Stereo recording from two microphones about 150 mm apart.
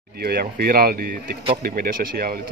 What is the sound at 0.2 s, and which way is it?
Speech, 90° right.